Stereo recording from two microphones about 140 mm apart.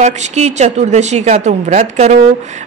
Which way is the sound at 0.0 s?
55° right (ahead or behind).